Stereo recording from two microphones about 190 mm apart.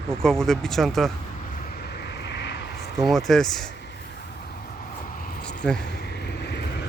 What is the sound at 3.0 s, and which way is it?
Speech, centre (ahead or behind).